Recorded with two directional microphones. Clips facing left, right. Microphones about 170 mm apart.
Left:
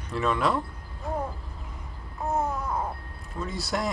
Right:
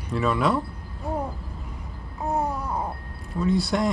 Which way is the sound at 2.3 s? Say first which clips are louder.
Right 1 dB; 10° right (ahead or behind).